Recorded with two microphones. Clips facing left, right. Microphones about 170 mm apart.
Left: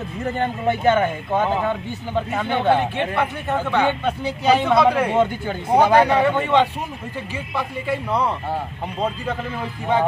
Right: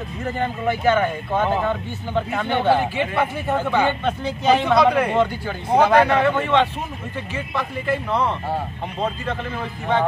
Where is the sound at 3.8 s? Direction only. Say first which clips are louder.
Left 1 dB; 10° left (ahead or behind).